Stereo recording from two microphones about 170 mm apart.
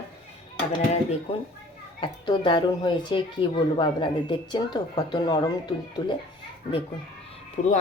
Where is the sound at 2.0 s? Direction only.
25° left (ahead or behind).